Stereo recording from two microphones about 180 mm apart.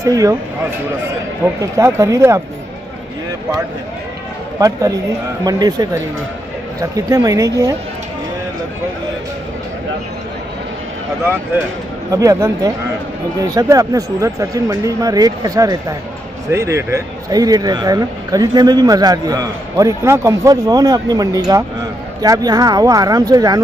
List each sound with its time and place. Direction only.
0.0 s speech: 20° right (ahead or behind)
1.4 s speech: 15° right (ahead or behind)
4.6 s speech: 20° right (ahead or behind)
12.1 s speech: 20° right (ahead or behind)